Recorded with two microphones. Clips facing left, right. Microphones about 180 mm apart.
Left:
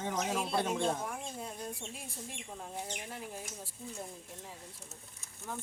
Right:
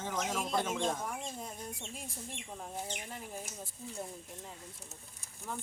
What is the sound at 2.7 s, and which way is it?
Speech, 5° right (ahead or behind).